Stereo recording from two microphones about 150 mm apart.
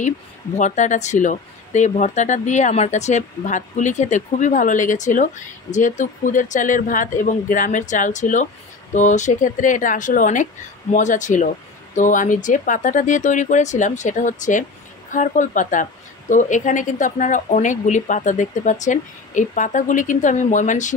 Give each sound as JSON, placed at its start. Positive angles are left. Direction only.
{"t": 0.6, "sound": "speech", "side_deg": 55}